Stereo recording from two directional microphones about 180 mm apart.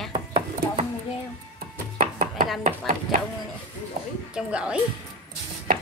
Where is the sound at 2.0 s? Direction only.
45° right (ahead or behind).